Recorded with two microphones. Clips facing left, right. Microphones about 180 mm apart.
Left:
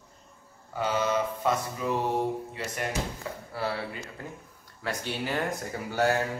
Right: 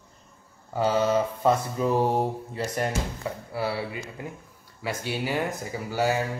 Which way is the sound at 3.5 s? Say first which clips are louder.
Right 2 dB; 10° right (ahead or behind).